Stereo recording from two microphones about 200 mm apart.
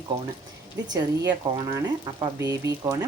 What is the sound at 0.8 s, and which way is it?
Speech, 20° right (ahead or behind).